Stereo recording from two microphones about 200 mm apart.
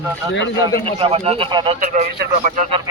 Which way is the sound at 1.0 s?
30° right (ahead or behind).